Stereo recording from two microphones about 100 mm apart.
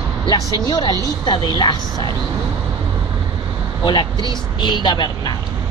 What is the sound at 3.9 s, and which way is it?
Speech, 50° left (ahead or behind).